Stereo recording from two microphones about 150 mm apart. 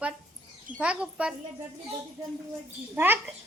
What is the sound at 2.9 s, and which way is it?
Speech, 15° right (ahead or behind).